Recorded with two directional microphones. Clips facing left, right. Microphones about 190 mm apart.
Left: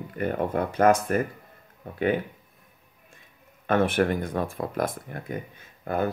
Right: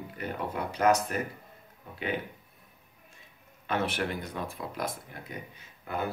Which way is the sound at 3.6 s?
50° left (ahead or behind).